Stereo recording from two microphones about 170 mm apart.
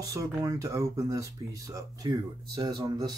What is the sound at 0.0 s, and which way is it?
Speech, 20° right (ahead or behind).